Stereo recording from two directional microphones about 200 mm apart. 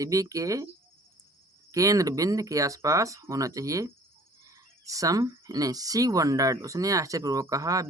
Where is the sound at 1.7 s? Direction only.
15° right (ahead or behind).